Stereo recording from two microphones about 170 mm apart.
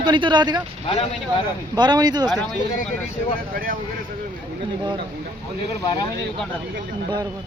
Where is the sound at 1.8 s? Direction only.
25° right (ahead or behind).